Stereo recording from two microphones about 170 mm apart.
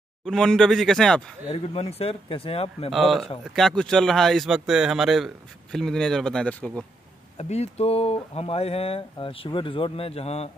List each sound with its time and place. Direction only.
0.2 s speech: 5° left (ahead or behind)
1.5 s speech: 35° left (ahead or behind)
2.9 s speech: centre (ahead or behind)
7.3 s speech: 40° left (ahead or behind)